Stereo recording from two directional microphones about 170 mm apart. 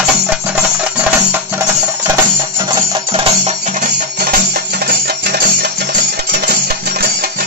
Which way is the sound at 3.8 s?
55° right (ahead or behind).